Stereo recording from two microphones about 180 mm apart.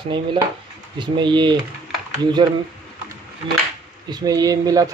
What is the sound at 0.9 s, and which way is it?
Speech, 25° right (ahead or behind).